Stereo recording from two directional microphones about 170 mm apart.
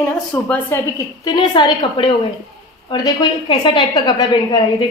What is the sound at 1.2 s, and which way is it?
A woman's voice, 25° left (ahead or behind).